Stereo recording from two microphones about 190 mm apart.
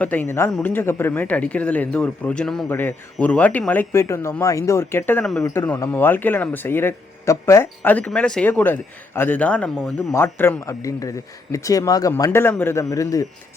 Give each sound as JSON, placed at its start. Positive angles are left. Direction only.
{"t": 0.0, "sound": "speech", "side_deg": 10}
{"t": 10.1, "sound": "speech", "side_deg": 15}